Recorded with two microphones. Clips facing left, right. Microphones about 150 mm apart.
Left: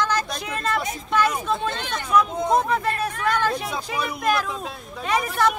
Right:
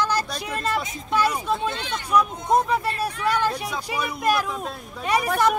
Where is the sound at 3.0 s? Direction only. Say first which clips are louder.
Even; 10° right (ahead or behind).